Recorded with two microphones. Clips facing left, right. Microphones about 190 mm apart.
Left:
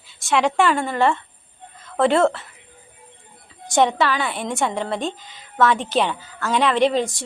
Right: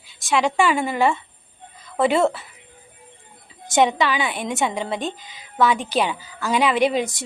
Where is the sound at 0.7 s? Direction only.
15° right (ahead or behind).